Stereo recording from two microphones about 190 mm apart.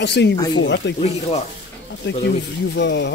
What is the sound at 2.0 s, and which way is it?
Speech, 65° left (ahead or behind).